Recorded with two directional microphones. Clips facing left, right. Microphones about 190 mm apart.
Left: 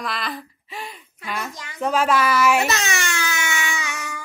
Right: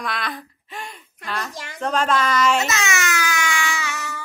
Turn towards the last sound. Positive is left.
turn(degrees=15)  # may be behind; listen again after turning